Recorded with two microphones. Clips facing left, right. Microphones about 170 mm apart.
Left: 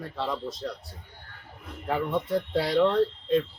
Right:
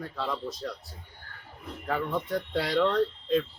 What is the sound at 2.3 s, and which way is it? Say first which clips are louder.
Speech: left 3 dB; 25° left (ahead or behind).